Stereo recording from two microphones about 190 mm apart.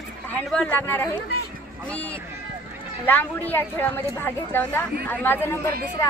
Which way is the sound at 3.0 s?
10° left (ahead or behind).